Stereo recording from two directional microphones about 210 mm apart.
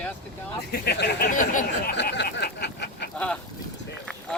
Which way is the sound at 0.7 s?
50° left (ahead or behind).